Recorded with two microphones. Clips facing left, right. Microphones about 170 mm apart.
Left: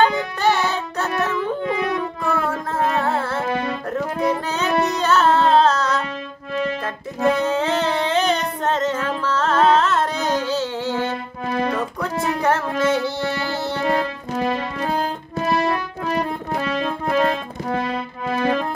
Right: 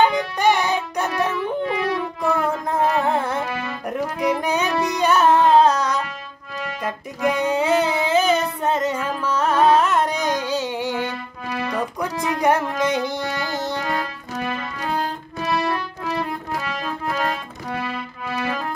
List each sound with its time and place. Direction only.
0.0 s music: 15° right (ahead or behind)
2.3 s music: 15° right (ahead or behind)
3.4 s music: 30° left (ahead or behind)
3.9 s music: 15° right (ahead or behind)
7.3 s music: 15° right (ahead or behind)
11.4 s music: 30° left (ahead or behind)
12.0 s speech: 15° right (ahead or behind)
13.8 s music: 35° left (ahead or behind)